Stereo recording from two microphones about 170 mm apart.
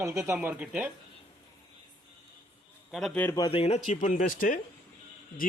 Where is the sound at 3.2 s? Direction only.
20° left (ahead or behind).